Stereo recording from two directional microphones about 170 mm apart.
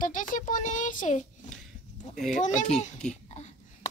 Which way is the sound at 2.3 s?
45° left (ahead or behind).